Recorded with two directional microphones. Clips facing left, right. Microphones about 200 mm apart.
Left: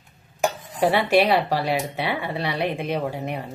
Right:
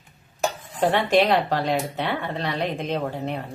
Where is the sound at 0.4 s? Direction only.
10° left (ahead or behind).